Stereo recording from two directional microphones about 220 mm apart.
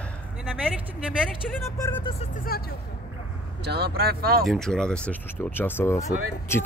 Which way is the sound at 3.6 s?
45° right (ahead or behind).